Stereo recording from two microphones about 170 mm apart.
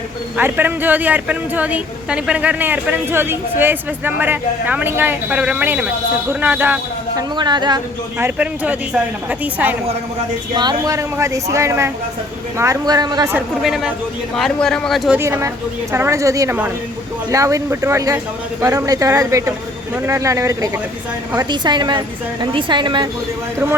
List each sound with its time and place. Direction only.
0.3 s a woman's voice: 10° right (ahead or behind)
7.2 s a woman's voice: 25° right (ahead or behind)
8.2 s a woman's voice: 10° right (ahead or behind)
10.5 s a woman's voice: 25° right (ahead or behind)
13.3 s speech: centre (ahead or behind)
15.2 s a woman's voice: 15° right (ahead or behind)